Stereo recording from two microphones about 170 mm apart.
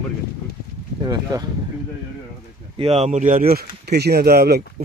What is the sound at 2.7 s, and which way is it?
Speech, 35° right (ahead or behind).